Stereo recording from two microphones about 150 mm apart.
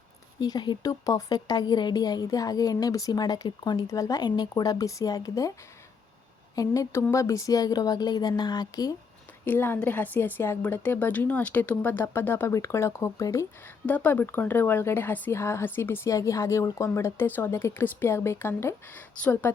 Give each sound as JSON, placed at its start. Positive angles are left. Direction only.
{"t": 0.3, "sound": "a woman's voice", "side_deg": 30}
{"t": 6.6, "sound": "a woman's voice", "side_deg": 20}
{"t": 9.4, "sound": "speech", "side_deg": 15}